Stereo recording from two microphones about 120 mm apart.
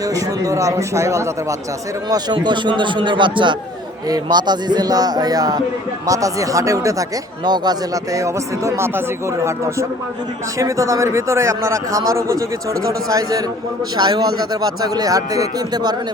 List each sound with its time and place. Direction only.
0.1 s a man's voice: 25° right (ahead or behind)
2.0 s a man's voice: 35° right (ahead or behind)